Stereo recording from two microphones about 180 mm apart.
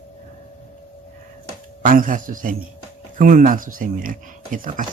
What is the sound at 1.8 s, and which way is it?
Speech, 50° right (ahead or behind).